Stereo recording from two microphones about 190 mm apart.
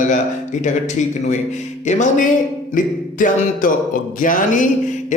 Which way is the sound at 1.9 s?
40° left (ahead or behind).